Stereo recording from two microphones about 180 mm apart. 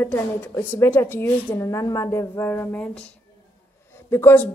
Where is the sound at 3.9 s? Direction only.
15° left (ahead or behind).